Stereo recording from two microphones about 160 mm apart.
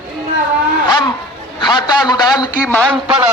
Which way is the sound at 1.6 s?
25° left (ahead or behind).